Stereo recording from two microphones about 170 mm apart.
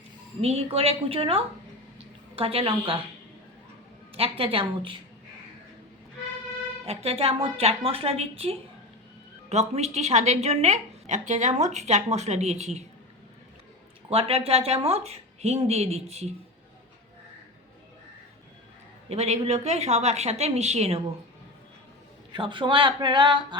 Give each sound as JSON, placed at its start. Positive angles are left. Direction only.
{"t": 0.4, "sound": "a woman's voice", "side_deg": -35}
{"t": 4.1, "sound": "a woman's voice", "side_deg": -35}
{"t": 6.8, "sound": "a woman's voice", "side_deg": -35}
{"t": 14.1, "sound": "a woman's voice", "side_deg": -35}
{"t": 19.0, "sound": "a woman's voice", "side_deg": -40}
{"t": 22.3, "sound": "speech", "side_deg": -30}